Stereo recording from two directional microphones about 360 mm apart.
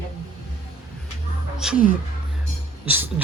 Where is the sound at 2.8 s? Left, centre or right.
Centre.